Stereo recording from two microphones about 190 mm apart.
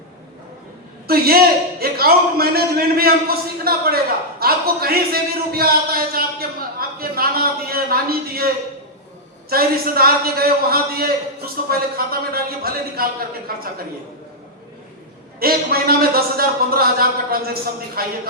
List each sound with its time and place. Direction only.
1.0 s a man's voice: 55° right (ahead or behind)
6.7 s a sound: 50° right (ahead or behind)
7.7 s a man's voice: 55° right (ahead or behind)
9.5 s a man's voice: 50° right (ahead or behind)
15.4 s a man's voice: 50° right (ahead or behind)